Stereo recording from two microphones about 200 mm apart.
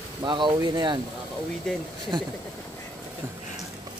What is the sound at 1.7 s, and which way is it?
Speech, centre (ahead or behind).